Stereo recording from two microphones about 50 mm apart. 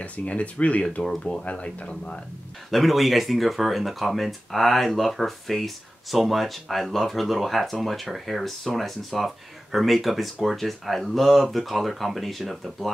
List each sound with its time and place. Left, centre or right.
0.0 s speech: left
1.0 s speech: centre
1.4 s speech: left
2.7 s speech: centre